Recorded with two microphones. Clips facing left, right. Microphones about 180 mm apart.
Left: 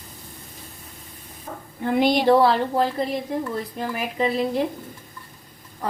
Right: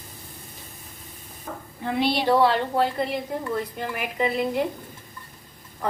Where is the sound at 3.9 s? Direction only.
35° left (ahead or behind).